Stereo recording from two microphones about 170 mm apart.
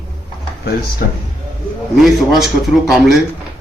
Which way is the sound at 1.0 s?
75° left (ahead or behind).